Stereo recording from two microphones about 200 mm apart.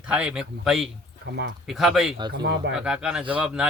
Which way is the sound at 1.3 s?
60° right (ahead or behind).